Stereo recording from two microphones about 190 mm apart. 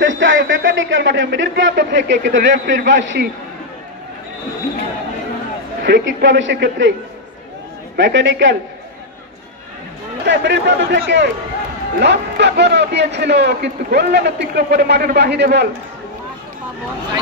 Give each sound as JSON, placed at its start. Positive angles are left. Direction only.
{"t": 0.0, "sound": "speech", "side_deg": -80}
{"t": 5.8, "sound": "speech", "side_deg": -65}
{"t": 7.9, "sound": "speech", "side_deg": -75}
{"t": 10.2, "sound": "a man's voice", "side_deg": -70}